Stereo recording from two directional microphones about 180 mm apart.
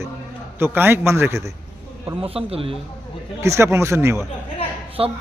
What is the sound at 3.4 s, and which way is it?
Speech, 15° right (ahead or behind).